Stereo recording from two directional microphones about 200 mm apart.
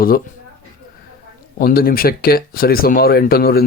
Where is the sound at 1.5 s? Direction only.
50° left (ahead or behind).